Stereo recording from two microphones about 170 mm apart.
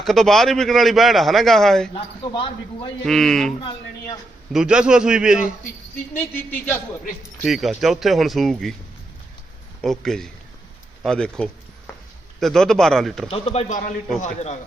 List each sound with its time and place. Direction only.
0.0 s a man's voice: centre (ahead or behind)
1.9 s speech: 30° left (ahead or behind)
3.1 s a man's voice: centre (ahead or behind)
4.5 s a man's voice: 5° right (ahead or behind)
6.3 s a man's voice: 10° left (ahead or behind)
7.2 s a man's voice: centre (ahead or behind)
9.8 s a man's voice: centre (ahead or behind)
13.3 s speech: 35° left (ahead or behind)